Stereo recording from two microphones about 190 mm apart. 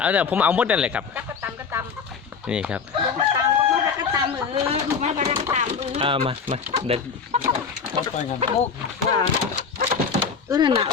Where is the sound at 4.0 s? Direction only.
25° right (ahead or behind).